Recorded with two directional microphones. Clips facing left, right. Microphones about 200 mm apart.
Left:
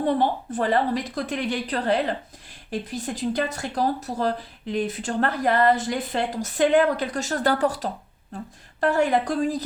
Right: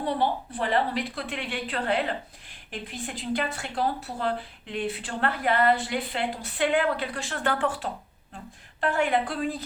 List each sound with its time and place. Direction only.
0.0 s a woman's voice: 45° left (ahead or behind)